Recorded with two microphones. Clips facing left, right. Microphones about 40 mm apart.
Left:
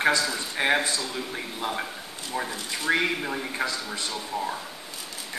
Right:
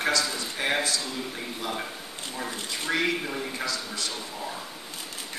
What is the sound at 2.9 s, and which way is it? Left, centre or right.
Speech, centre.